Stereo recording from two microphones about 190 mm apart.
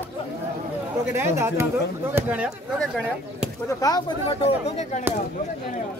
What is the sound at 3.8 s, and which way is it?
Speech, 25° left (ahead or behind).